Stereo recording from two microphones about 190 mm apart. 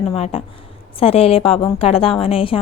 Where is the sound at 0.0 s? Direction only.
35° left (ahead or behind).